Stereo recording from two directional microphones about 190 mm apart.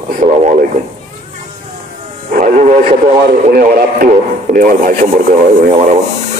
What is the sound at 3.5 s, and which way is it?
Speech, 50° right (ahead or behind).